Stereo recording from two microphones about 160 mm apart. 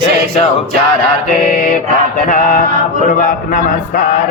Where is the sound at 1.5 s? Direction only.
55° left (ahead or behind).